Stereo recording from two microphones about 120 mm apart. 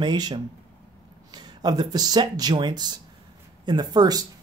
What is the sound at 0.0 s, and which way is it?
Speech, 40° right (ahead or behind).